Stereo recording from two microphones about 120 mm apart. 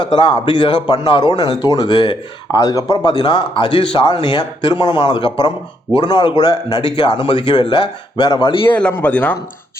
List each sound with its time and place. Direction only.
0.0 s speech: 40° left (ahead or behind)
8.7 s speech: 15° left (ahead or behind)